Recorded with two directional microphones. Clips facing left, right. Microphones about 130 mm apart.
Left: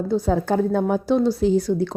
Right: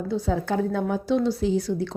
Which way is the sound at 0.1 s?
45° left (ahead or behind).